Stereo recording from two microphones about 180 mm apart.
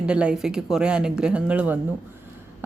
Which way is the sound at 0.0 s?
5° right (ahead or behind).